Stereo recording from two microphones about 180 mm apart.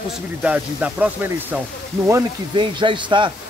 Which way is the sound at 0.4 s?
5° right (ahead or behind).